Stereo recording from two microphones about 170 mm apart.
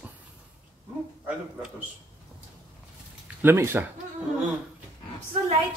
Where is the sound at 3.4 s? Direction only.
15° right (ahead or behind).